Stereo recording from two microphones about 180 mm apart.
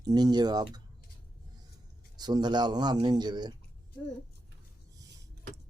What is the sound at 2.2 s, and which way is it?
Speech, 25° right (ahead or behind).